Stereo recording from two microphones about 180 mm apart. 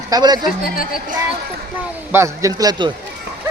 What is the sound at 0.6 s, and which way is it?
Speech, 50° left (ahead or behind).